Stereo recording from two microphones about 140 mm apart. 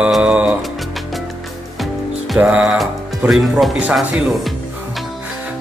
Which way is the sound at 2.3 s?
5° right (ahead or behind).